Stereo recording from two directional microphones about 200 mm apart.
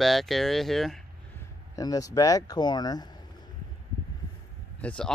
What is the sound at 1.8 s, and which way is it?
Speech, 20° left (ahead or behind).